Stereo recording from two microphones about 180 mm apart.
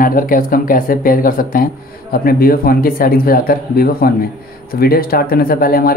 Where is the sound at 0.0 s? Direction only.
50° left (ahead or behind).